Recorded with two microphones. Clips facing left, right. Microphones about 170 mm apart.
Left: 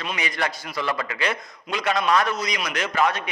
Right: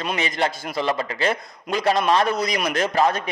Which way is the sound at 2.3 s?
45° right (ahead or behind).